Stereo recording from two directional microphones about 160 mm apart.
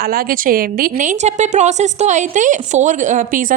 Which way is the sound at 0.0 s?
70° right (ahead or behind).